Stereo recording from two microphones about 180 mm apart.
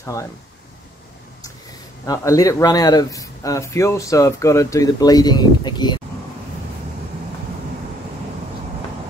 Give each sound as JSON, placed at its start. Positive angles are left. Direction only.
{"t": 0.0, "sound": "speech", "side_deg": 15}
{"t": 2.0, "sound": "speech", "side_deg": 20}